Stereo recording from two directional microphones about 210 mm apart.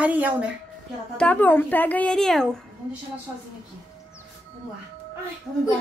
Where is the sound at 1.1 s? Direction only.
5° left (ahead or behind).